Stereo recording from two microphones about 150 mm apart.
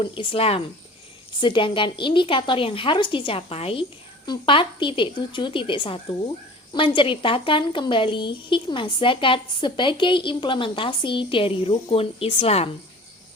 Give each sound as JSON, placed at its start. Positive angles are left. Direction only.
{"t": 0.0, "sound": "a woman's voice", "side_deg": 35}